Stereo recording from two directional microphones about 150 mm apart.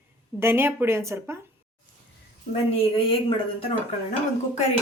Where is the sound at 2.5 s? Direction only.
40° left (ahead or behind).